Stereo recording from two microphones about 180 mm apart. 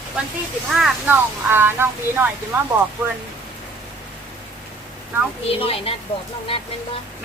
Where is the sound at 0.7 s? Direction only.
5° right (ahead or behind).